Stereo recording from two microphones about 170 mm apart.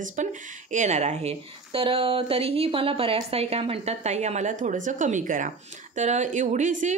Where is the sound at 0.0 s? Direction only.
45° right (ahead or behind).